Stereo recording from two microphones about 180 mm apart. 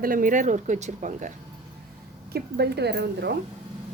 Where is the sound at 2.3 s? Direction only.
65° right (ahead or behind).